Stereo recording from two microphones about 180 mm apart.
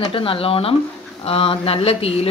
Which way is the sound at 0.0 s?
30° left (ahead or behind).